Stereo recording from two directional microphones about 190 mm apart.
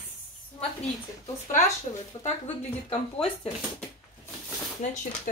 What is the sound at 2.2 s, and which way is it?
Speech, 35° left (ahead or behind).